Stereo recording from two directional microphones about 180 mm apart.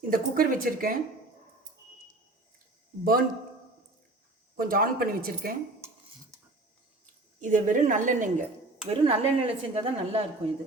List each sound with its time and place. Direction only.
0.1 s speech: 50° right (ahead or behind)
3.0 s speech: 55° right (ahead or behind)
4.5 s speech: 55° right (ahead or behind)
7.4 s speech: 45° right (ahead or behind)
8.9 s speech: 30° right (ahead or behind)